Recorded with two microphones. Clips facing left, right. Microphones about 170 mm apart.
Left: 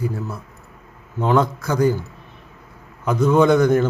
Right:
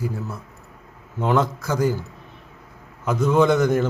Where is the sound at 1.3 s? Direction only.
5° right (ahead or behind).